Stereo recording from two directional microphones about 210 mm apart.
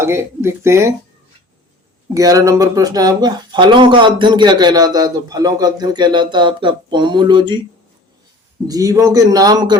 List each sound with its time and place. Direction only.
0.0 s a man's voice: 10° right (ahead or behind)
2.1 s speech: 15° right (ahead or behind)
8.6 s a man's voice: 15° right (ahead or behind)